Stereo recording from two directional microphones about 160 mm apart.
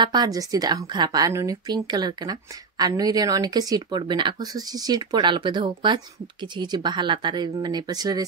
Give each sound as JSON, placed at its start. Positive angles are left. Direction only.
{"t": 0.0, "sound": "speech", "side_deg": -25}